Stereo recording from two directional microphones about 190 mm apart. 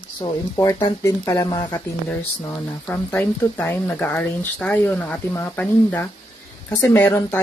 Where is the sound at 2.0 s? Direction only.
10° left (ahead or behind).